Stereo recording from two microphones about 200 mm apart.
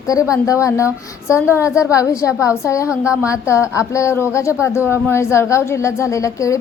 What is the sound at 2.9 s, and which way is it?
Speech, 5° right (ahead or behind).